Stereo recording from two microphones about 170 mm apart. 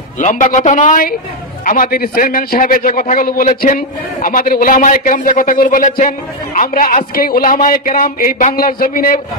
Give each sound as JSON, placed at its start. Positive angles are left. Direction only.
{"t": 0.2, "sound": "a man's voice", "side_deg": 50}